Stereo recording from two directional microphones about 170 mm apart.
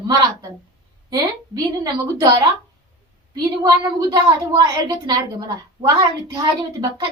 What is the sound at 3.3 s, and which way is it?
A woman's voice, 20° right (ahead or behind).